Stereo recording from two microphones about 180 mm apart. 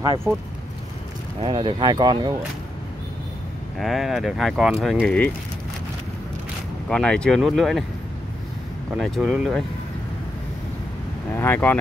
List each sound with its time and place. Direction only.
0.0 s speech: 20° right (ahead or behind)
1.4 s speech: 30° right (ahead or behind)
3.7 s speech: centre (ahead or behind)
6.9 s speech: 5° left (ahead or behind)
8.9 s speech: centre (ahead or behind)
11.3 s speech: 10° left (ahead or behind)